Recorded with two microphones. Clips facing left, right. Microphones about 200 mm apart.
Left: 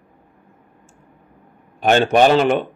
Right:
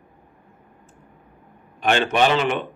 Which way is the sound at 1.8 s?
40° left (ahead or behind).